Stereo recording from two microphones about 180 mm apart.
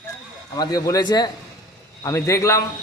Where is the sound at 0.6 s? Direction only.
20° left (ahead or behind).